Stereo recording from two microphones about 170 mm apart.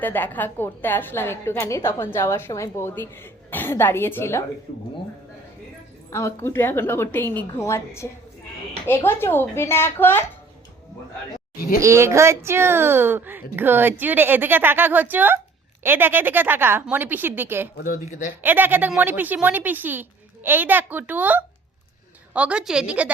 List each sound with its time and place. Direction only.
0.0 s a woman's voice: 10° left (ahead or behind)
6.1 s a woman's voice: 15° left (ahead or behind)
11.8 s speech: 15° right (ahead or behind)
17.7 s speech: 60° left (ahead or behind)
18.4 s speech: 10° right (ahead or behind)